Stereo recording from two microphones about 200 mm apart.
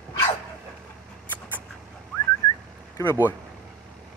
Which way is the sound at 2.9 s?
15° left (ahead or behind).